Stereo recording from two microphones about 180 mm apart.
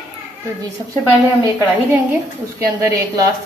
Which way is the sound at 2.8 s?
20° right (ahead or behind).